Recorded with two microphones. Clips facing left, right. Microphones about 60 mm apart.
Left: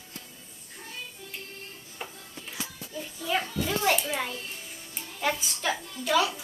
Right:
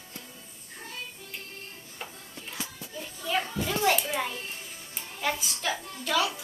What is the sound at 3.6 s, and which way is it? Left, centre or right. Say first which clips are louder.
A woman's voice: right 1 dB; centre.